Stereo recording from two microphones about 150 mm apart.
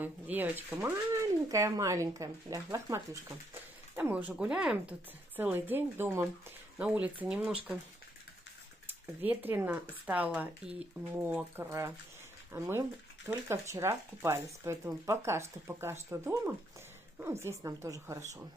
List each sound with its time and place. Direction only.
0.0 s speech: 10° right (ahead or behind)
3.9 s speech: 10° right (ahead or behind)
7.2 s speech: 5° right (ahead or behind)
8.8 s speech: 10° right (ahead or behind)